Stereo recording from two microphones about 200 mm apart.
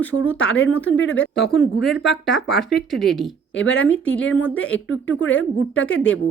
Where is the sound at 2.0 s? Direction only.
Centre (ahead or behind).